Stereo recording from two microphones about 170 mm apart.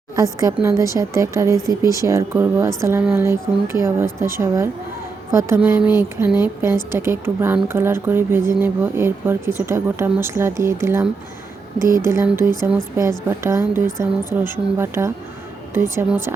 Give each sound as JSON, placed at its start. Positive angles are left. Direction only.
{"t": 0.2, "sound": "a woman's voice", "side_deg": -20}